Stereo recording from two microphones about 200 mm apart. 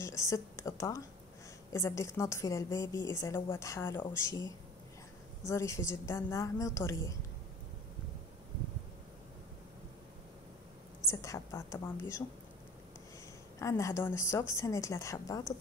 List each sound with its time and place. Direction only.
0.0 s a woman's voice: 15° left (ahead or behind)
11.1 s a woman's voice: 15° left (ahead or behind)
13.6 s a woman's voice: 15° left (ahead or behind)